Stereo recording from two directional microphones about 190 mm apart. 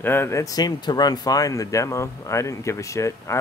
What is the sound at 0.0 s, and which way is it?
Speech, 10° left (ahead or behind).